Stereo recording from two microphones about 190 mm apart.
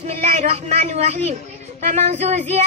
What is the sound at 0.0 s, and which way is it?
A man's voice, 35° right (ahead or behind).